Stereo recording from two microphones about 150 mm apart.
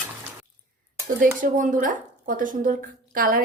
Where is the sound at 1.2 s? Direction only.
65° right (ahead or behind).